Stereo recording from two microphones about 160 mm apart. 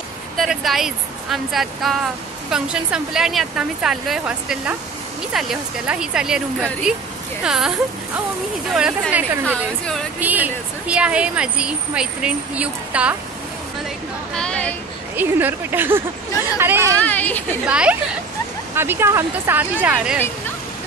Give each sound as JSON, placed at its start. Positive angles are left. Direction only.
{"t": 0.4, "sound": "a woman's voice", "side_deg": 0}
{"t": 8.7, "sound": "a woman's voice", "side_deg": -5}
{"t": 10.2, "sound": "speech", "side_deg": -10}
{"t": 14.3, "sound": "a sound", "side_deg": 5}
{"t": 15.1, "sound": "speech", "side_deg": -10}
{"t": 17.0, "sound": "a woman's voice", "side_deg": 10}
{"t": 17.6, "sound": "speech", "side_deg": -5}